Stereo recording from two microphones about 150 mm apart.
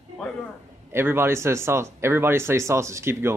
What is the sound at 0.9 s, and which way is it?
Speech, 15° right (ahead or behind).